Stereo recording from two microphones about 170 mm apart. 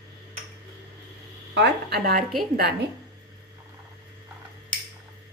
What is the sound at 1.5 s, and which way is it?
Speech, 80° right.